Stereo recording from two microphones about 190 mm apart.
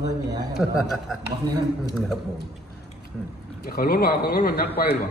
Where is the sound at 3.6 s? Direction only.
50° left (ahead or behind).